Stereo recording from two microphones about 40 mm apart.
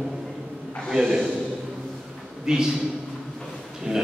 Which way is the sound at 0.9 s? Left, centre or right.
Centre.